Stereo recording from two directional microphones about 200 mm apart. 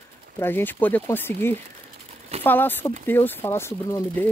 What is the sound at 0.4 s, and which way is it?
Speech, 10° left (ahead or behind).